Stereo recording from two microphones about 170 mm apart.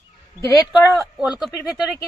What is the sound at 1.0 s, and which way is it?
Speech, 5° right (ahead or behind).